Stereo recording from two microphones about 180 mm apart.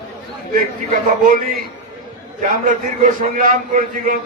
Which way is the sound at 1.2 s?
50° right (ahead or behind).